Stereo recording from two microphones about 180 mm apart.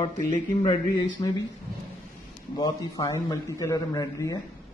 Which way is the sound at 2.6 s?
20° left (ahead or behind).